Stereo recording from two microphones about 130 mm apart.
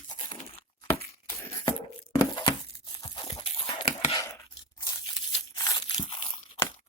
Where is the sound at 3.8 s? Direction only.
50° left (ahead or behind).